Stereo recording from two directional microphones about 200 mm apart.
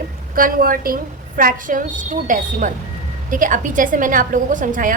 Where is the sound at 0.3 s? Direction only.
45° right (ahead or behind).